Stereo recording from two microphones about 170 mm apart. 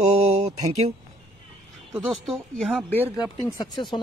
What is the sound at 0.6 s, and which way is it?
Speech, 40° right (ahead or behind).